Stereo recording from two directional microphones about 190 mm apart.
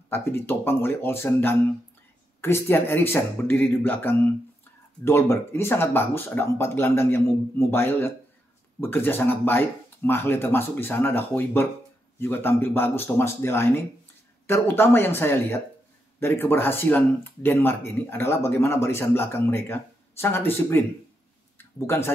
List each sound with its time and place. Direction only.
0.1 s speech: 10° left (ahead or behind)